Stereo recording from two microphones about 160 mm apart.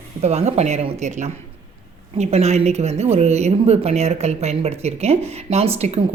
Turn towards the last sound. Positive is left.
turn(degrees=-40)  # may be behind; listen again after turning